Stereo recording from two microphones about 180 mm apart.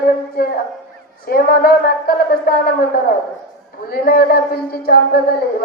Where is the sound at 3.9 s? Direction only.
55° left (ahead or behind).